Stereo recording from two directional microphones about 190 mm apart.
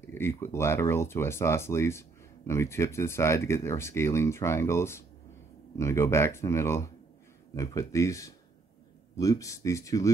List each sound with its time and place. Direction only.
0.0 s speech: 15° left (ahead or behind)